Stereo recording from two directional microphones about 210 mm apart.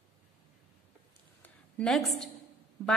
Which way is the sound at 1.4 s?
5° left (ahead or behind).